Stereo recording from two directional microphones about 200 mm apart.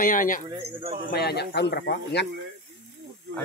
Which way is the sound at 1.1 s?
55° left (ahead or behind).